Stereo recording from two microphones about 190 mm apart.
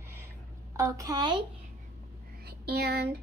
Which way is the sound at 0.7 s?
15° right (ahead or behind).